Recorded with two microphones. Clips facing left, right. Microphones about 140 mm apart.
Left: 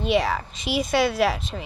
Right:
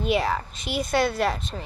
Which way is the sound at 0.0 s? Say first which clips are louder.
Left 2 dB; centre (ahead or behind).